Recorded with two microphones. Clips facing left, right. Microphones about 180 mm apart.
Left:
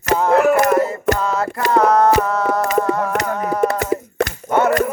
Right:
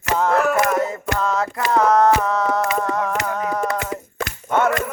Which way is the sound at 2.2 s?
5° left (ahead or behind).